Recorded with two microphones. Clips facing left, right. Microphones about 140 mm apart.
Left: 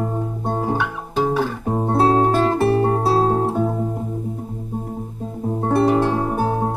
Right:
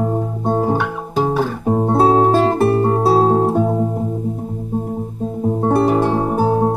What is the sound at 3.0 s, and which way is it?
Guitar, 10° right (ahead or behind).